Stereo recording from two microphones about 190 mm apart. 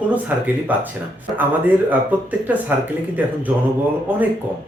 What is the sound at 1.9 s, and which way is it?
Speech, 10° right (ahead or behind).